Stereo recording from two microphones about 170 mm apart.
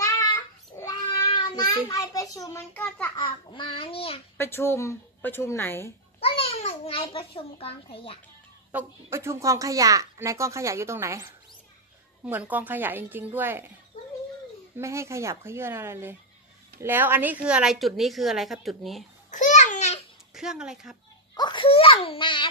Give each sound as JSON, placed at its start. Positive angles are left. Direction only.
{"t": 0.7, "sound": "child singing", "side_deg": 25}
{"t": 1.9, "sound": "a child's voice", "side_deg": 20}
{"t": 3.2, "sound": "a child's voice", "side_deg": 30}
{"t": 4.4, "sound": "speech", "side_deg": 15}
{"t": 6.1, "sound": "a child's voice", "side_deg": 35}
{"t": 8.7, "sound": "speech", "side_deg": -15}
{"t": 14.8, "sound": "a woman's voice", "side_deg": -15}
{"t": 19.3, "sound": "babbling", "side_deg": 45}
{"t": 20.3, "sound": "a woman's voice", "side_deg": -5}
{"t": 21.4, "sound": "a child's voice", "side_deg": 30}